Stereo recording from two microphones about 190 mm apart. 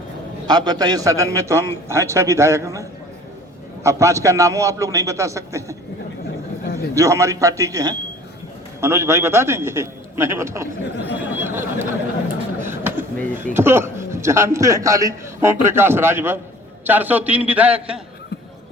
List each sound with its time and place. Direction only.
0.4 s a man's voice: 20° right (ahead or behind)
3.8 s a man's voice: 15° right (ahead or behind)
6.7 s a man's voice: 15° right (ahead or behind)
12.6 s a sound: 10° right (ahead or behind)
13.3 s a man's voice: 10° right (ahead or behind)